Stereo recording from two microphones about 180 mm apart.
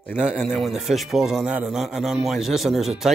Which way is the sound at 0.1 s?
5° right (ahead or behind).